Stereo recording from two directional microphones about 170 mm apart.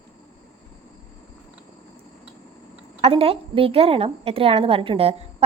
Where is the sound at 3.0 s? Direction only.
35° right (ahead or behind).